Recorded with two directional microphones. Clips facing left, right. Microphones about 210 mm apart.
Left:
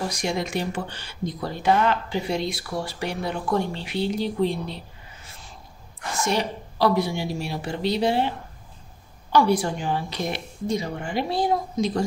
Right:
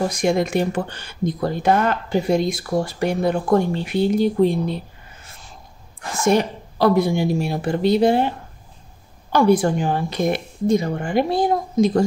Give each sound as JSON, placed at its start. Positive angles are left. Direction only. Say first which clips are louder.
{"t": 0.1, "sound": "speech", "louder": "right 7 dB", "side_deg": -50}
{"t": 6.2, "sound": "speech", "louder": "right 8 dB", "side_deg": -50}
{"t": 9.3, "sound": "speech", "louder": "right 5 dB", "side_deg": -50}